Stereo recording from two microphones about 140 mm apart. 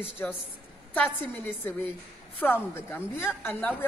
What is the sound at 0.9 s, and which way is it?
A man's voice, 15° left (ahead or behind).